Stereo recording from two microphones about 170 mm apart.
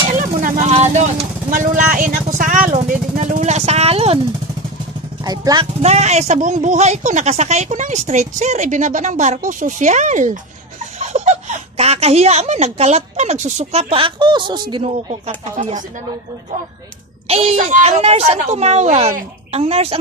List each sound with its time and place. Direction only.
0.4 s vehicle: 40° right (ahead or behind)
5.2 s speech: 20° right (ahead or behind)
5.8 s a woman's voice: 40° right (ahead or behind)
17.3 s a woman's voice: 40° right (ahead or behind)